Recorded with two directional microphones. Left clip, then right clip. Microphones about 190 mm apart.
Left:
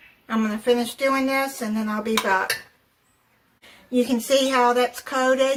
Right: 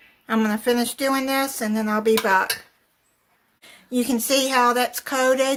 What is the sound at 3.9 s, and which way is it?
Speech, 55° right (ahead or behind).